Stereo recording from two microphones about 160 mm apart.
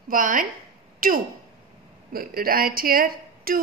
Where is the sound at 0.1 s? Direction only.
60° right (ahead or behind).